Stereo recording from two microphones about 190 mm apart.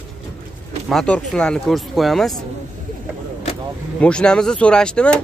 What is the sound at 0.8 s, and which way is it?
Speech, 5° left (ahead or behind).